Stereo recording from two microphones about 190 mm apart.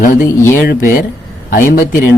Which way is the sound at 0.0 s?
45° left (ahead or behind).